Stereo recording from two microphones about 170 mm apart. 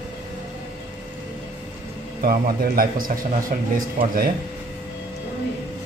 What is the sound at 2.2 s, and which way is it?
Speech, 60° right (ahead or behind).